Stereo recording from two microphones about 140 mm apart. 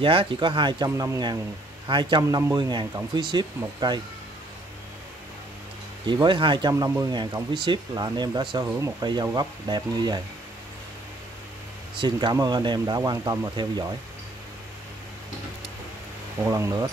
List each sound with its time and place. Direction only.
0.0 s speech: 40° right (ahead or behind)
0.8 s speech: 20° right (ahead or behind)
1.9 s speech: 35° right (ahead or behind)
6.2 s speech: 35° right (ahead or behind)
6.7 s speech: 25° right (ahead or behind)
12.0 s speech: 35° right (ahead or behind)
16.4 s speech: 20° right (ahead or behind)